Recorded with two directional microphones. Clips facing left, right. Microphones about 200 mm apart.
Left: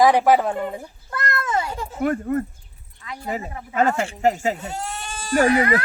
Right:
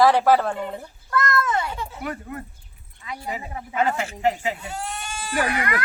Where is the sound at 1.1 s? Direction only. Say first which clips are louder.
Right 2 dB; 30° left (ahead or behind).